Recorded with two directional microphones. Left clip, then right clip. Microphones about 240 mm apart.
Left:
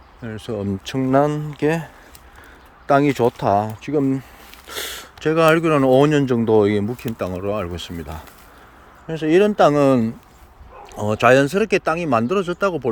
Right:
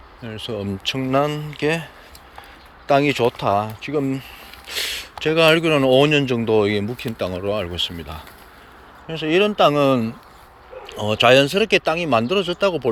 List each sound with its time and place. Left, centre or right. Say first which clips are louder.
0.3 s speech: left 1 dB; left